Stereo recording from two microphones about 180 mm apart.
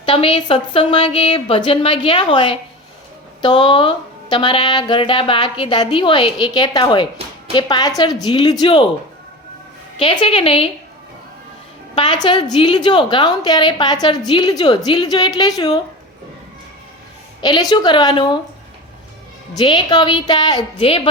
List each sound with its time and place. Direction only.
0.0 s a woman's voice: 30° left (ahead or behind)
10.0 s a woman's voice: 30° left (ahead or behind)
11.9 s a woman's voice: 25° left (ahead or behind)
17.4 s a woman's voice: 20° left (ahead or behind)
19.5 s a woman's voice: 25° left (ahead or behind)